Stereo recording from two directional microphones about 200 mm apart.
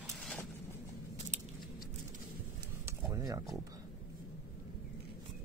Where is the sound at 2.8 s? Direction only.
15° right (ahead or behind).